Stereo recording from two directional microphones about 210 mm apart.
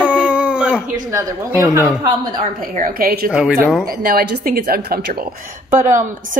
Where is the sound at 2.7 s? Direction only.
40° right (ahead or behind).